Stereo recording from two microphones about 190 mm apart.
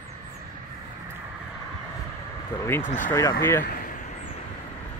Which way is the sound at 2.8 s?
40° left (ahead or behind).